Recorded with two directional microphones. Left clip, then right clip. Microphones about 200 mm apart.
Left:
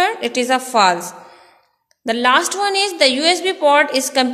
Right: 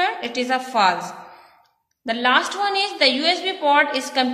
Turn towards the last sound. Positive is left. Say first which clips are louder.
# left 3 dB
turn(degrees=50)  # may be behind; listen again after turning